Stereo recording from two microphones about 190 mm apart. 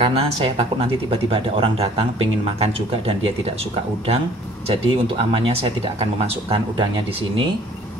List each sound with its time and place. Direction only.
0.0 s speech: 30° right (ahead or behind)
4.6 s speech: 25° right (ahead or behind)